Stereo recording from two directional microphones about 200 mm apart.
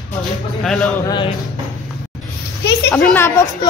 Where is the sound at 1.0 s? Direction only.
25° left (ahead or behind).